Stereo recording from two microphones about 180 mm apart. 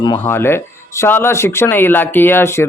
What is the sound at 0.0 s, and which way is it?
Speech, 20° left (ahead or behind).